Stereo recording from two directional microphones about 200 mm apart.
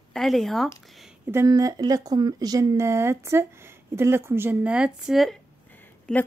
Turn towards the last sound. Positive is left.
turn(degrees=5)  # may be behind; listen again after turning